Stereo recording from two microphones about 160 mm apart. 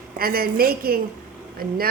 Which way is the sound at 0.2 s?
70° right (ahead or behind).